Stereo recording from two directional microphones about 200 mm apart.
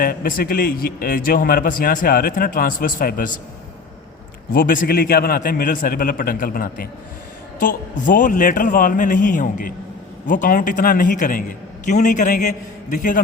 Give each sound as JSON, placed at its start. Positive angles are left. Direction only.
{"t": 0.0, "sound": "a man's voice", "side_deg": 45}
{"t": 4.5, "sound": "a man's voice", "side_deg": 45}